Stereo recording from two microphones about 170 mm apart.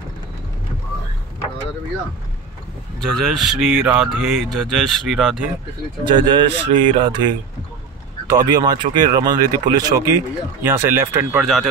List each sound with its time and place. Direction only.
3.0 s speech: centre (ahead or behind)
6.0 s speech: 30° right (ahead or behind); by 11.4 s 10° right (ahead or behind)
11.4 s speech: centre (ahead or behind)